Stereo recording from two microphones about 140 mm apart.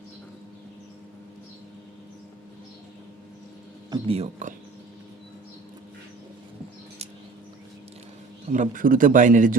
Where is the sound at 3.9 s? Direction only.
45° right (ahead or behind).